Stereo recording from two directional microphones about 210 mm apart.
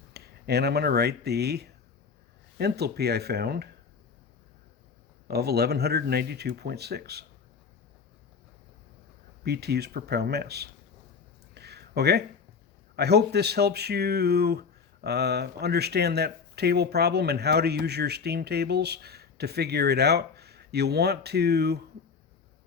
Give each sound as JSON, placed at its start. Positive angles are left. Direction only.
{"t": 0.1, "sound": "speech", "side_deg": -50}
{"t": 5.3, "sound": "speech", "side_deg": -50}
{"t": 9.4, "sound": "speech", "side_deg": -50}
{"t": 11.5, "sound": "a sound", "side_deg": -50}
{"t": 13.0, "sound": "speech", "side_deg": -50}